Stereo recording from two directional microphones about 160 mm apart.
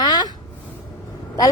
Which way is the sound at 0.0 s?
25° left (ahead or behind).